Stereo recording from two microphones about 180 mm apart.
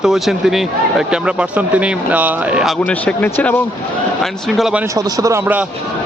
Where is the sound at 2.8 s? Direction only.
10° left (ahead or behind).